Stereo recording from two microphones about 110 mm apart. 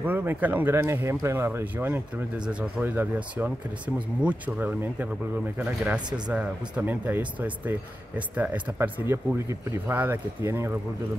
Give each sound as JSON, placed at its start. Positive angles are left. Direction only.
{"t": 0.0, "sound": "speech", "side_deg": -20}
{"t": 6.1, "sound": "speech", "side_deg": -10}